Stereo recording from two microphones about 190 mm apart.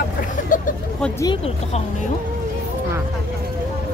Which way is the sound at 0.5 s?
45° left (ahead or behind).